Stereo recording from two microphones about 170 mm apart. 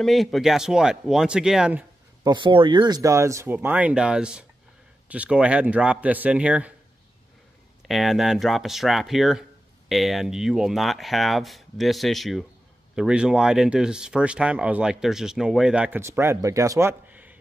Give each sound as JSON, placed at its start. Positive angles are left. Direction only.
{"t": 0.0, "sound": "speech", "side_deg": 0}
{"t": 2.2, "sound": "speech", "side_deg": -30}
{"t": 7.8, "sound": "speech", "side_deg": 0}